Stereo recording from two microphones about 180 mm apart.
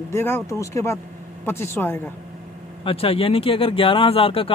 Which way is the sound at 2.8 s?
30° left (ahead or behind).